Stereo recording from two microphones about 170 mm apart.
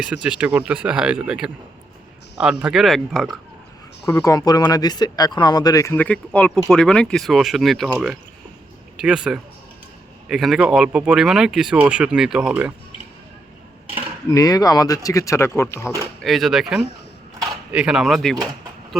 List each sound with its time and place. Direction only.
0.0 s speech: 5° right (ahead or behind)
4.0 s speech: 20° left (ahead or behind); by 7.9 s centre (ahead or behind)
9.0 s speech: 5° right (ahead or behind)
14.3 s speech: 20° left (ahead or behind)
16.2 s speech: centre (ahead or behind)